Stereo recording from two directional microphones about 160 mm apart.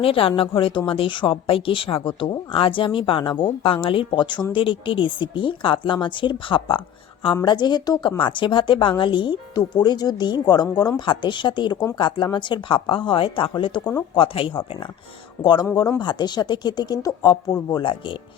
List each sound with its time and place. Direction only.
0.0 s a woman's voice: 35° left (ahead or behind)
15.4 s speech: 15° left (ahead or behind)
16.0 s a woman's voice: 25° left (ahead or behind)